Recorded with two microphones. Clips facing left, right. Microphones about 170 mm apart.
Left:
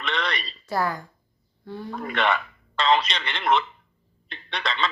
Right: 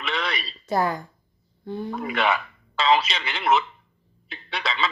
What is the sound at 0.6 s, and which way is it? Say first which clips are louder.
A woman's voice: right 3 dB; 20° right (ahead or behind).